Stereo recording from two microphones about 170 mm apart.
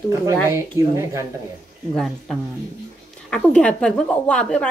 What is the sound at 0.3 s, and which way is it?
Speech, 15° right (ahead or behind).